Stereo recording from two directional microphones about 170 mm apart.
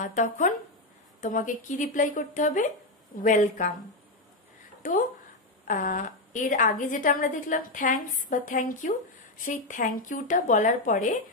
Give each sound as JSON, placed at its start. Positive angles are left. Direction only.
{"t": 0.0, "sound": "a woman's voice", "side_deg": 45}
{"t": 5.7, "sound": "a woman's voice", "side_deg": 50}